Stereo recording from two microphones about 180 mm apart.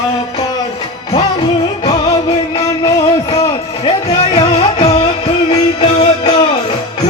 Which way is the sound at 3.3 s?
25° left (ahead or behind).